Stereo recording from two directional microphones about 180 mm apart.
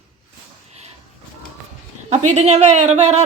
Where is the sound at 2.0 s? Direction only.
40° right (ahead or behind).